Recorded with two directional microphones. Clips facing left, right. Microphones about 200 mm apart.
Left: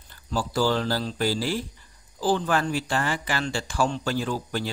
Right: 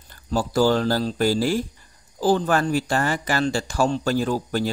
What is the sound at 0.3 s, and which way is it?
Speech, 45° right (ahead or behind).